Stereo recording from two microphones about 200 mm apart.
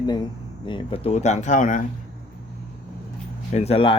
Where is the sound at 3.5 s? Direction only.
30° left (ahead or behind).